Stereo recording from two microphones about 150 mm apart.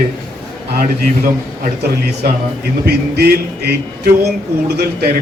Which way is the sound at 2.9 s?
90° right.